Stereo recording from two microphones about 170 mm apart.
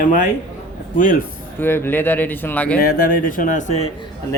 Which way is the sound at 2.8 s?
60° left (ahead or behind).